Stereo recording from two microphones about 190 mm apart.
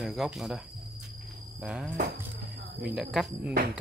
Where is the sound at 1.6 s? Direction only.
5° right (ahead or behind).